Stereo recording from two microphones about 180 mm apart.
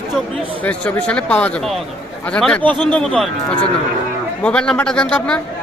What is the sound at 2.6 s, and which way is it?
Speech, 25° right (ahead or behind).